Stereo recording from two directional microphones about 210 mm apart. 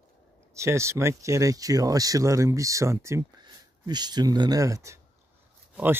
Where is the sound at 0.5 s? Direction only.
15° right (ahead or behind).